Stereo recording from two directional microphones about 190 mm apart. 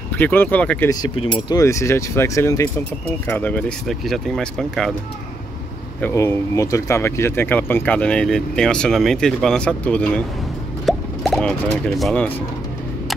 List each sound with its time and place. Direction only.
0.2 s speech: 10° left (ahead or behind)
0.8 s speech: 25° left (ahead or behind); by 4.9 s centre (ahead or behind)
5.9 s speech: 10° left (ahead or behind)